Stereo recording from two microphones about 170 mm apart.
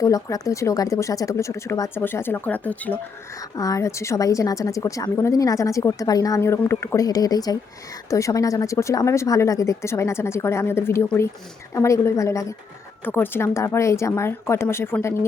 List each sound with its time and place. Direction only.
0.0 s speech: 20° left (ahead or behind)
3.5 s a woman's voice: 20° left (ahead or behind)